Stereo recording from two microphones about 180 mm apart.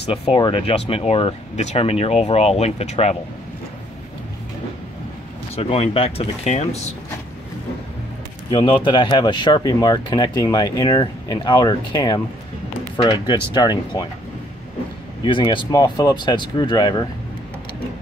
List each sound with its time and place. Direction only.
0.0 s speech: 30° left (ahead or behind)
5.6 s speech: 35° left (ahead or behind)
8.5 s speech: 25° left (ahead or behind)
15.2 s speech: 25° left (ahead or behind)